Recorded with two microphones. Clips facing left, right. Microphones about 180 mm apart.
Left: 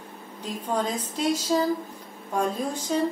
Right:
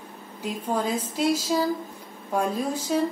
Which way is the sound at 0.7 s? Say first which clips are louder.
Right 1 dB; 10° right (ahead or behind).